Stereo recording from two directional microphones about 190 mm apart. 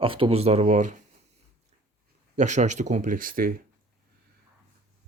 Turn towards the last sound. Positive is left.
turn(degrees=-50)  # may be behind; listen again after turning